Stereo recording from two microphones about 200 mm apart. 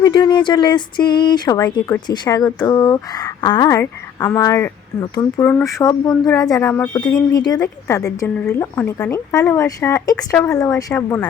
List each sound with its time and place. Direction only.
0.0 s speech: 20° left (ahead or behind)